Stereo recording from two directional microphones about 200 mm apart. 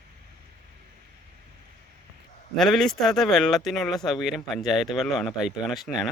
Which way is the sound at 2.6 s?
Centre (ahead or behind).